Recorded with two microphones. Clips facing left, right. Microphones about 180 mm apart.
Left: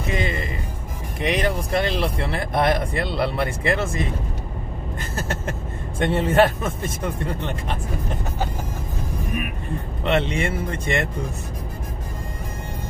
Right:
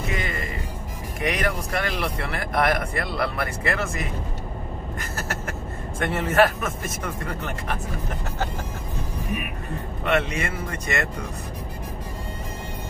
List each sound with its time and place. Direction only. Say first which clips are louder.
0.1 s music: left 6 dB; 25° left (ahead or behind)
1.2 s speech: left 3 dB; 25° left (ahead or behind)
5.1 s speech: left 4 dB; 30° left (ahead or behind)
10.0 s speech: left 2 dB; 25° left (ahead or behind)